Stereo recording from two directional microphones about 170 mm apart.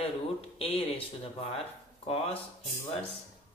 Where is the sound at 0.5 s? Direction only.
35° left (ahead or behind).